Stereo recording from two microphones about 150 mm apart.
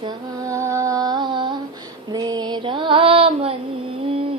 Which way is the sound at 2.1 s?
25° right (ahead or behind).